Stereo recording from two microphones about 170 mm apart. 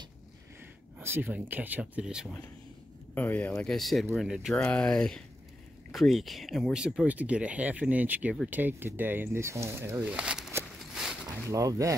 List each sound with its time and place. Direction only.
0.9 s speech: 10° right (ahead or behind)
3.2 s speech: 10° left (ahead or behind)
10.8 s a sound: centre (ahead or behind)
11.5 s speech: 20° right (ahead or behind)